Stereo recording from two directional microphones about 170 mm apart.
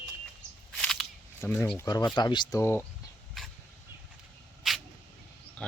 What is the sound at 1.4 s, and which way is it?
Speech, 10° left (ahead or behind).